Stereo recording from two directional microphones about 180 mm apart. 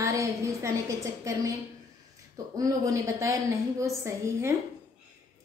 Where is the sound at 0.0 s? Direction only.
15° right (ahead or behind).